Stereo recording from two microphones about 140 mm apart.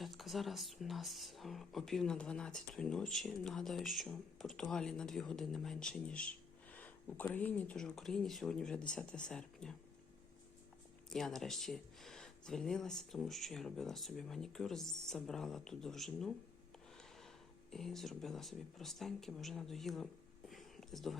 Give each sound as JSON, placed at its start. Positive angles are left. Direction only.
{"t": 0.0, "sound": "speech", "side_deg": 0}
{"t": 11.1, "sound": "speech", "side_deg": 5}
{"t": 17.7, "sound": "speech", "side_deg": 0}
{"t": 20.5, "sound": "whispering", "side_deg": 0}